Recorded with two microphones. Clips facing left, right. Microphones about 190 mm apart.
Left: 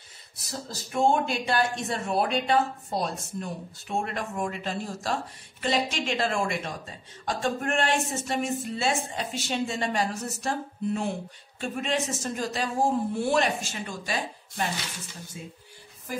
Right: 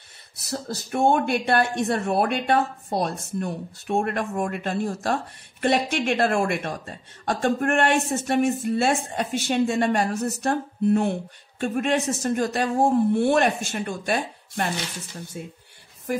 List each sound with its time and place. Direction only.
0.4 s speech: 65° right (ahead or behind)